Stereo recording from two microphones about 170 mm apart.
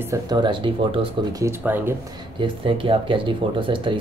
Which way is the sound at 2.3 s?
30° right (ahead or behind).